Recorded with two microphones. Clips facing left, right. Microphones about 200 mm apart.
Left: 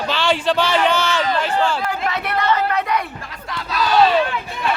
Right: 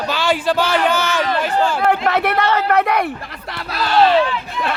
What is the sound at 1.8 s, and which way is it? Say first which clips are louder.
Speech: right 7 dB; 60° right (ahead or behind).